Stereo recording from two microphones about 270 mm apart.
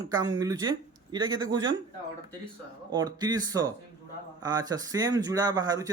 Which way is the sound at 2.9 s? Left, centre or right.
Centre.